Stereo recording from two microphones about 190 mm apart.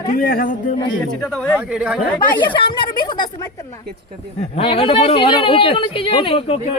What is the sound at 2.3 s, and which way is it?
Speech, 25° left (ahead or behind).